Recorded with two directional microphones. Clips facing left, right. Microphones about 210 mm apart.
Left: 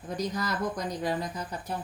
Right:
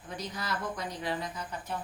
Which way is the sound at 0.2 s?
40° left (ahead or behind).